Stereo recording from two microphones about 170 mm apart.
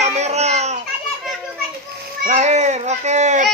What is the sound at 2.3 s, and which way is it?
Speech, 40° right (ahead or behind).